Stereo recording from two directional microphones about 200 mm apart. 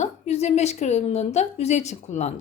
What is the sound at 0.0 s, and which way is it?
A woman's voice, 35° left (ahead or behind).